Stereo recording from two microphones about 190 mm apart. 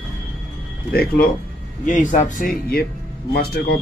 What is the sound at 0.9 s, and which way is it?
Speech, 50° left (ahead or behind).